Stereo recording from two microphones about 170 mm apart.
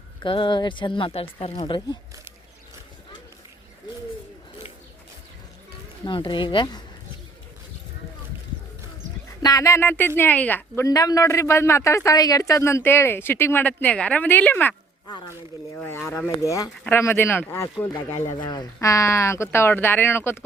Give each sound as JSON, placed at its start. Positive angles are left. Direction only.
{"t": 0.2, "sound": "speech", "side_deg": 30}
{"t": 6.1, "sound": "speech", "side_deg": 30}
{"t": 9.4, "sound": "speech", "side_deg": 20}
{"t": 17.9, "sound": "speech", "side_deg": 40}
{"t": 18.4, "sound": "speech", "side_deg": 25}